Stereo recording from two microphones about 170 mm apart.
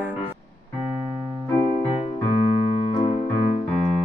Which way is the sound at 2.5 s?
35° left (ahead or behind).